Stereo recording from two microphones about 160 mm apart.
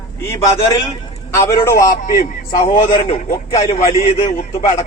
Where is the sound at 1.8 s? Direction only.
55° left (ahead or behind).